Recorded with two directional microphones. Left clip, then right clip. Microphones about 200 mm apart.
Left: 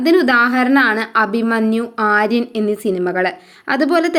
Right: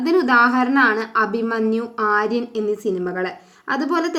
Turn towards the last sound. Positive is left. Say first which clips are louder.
# left 6 dB
turn(degrees=30)  # may be behind; listen again after turning